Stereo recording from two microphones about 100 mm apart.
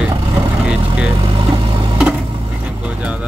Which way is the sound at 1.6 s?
60° right (ahead or behind).